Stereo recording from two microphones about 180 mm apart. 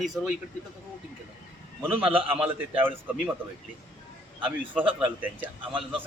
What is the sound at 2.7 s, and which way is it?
Speech, 10° right (ahead or behind).